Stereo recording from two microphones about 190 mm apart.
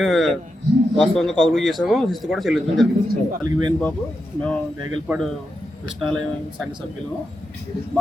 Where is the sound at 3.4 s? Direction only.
20° right (ahead or behind).